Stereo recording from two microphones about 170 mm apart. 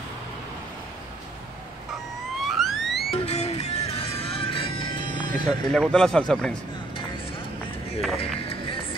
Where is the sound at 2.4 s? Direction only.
Centre (ahead or behind).